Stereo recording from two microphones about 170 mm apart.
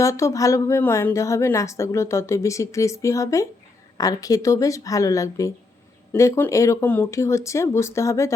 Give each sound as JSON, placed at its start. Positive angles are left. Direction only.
{"t": 0.0, "sound": "a woman's voice", "side_deg": 20}